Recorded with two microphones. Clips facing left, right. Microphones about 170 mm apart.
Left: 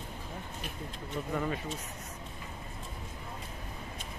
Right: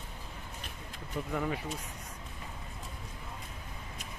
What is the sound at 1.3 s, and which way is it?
Speech, 5° right (ahead or behind).